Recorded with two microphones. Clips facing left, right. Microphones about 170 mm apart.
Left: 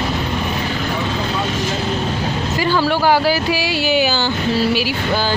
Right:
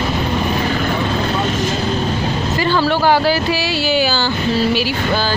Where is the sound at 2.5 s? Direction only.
10° left (ahead or behind).